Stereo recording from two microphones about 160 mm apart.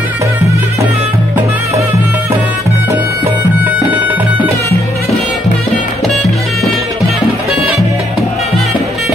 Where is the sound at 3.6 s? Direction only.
10° right (ahead or behind).